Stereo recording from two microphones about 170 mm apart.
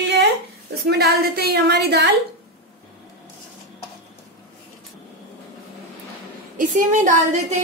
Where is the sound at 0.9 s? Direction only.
70° right (ahead or behind).